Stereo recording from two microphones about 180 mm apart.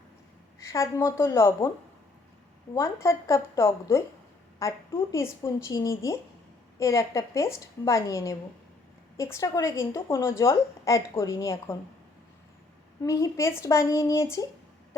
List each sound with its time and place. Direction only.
0.6 s a woman's voice: 15° left (ahead or behind)
2.7 s a woman's voice: 15° left (ahead or behind)
13.0 s a woman's voice: 15° left (ahead or behind)